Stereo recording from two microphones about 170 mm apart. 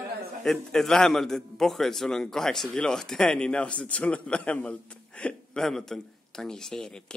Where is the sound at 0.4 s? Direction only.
5° left (ahead or behind).